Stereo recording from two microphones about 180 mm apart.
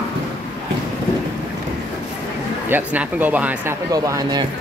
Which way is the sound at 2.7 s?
10° right (ahead or behind).